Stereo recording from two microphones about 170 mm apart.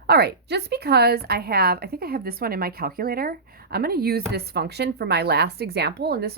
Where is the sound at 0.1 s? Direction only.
75° right (ahead or behind).